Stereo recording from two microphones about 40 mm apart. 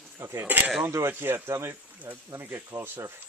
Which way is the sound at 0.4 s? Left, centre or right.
Right.